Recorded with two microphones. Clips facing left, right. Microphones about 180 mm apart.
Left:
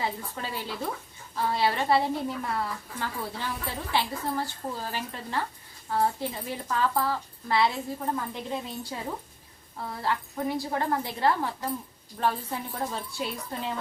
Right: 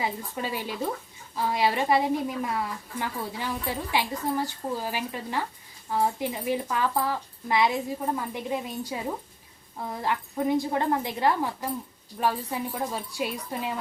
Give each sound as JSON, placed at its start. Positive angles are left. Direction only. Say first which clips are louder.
{"t": 0.0, "sound": "a woman's voice", "louder": "right 2 dB", "side_deg": -15}